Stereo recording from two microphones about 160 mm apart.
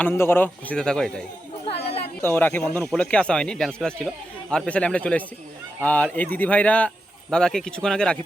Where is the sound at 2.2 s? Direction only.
10° left (ahead or behind).